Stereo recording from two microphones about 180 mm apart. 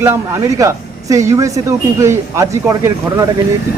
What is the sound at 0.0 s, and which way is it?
Speech, 15° right (ahead or behind).